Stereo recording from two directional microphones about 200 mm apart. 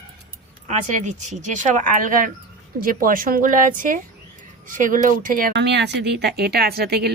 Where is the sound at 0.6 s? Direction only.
35° right (ahead or behind).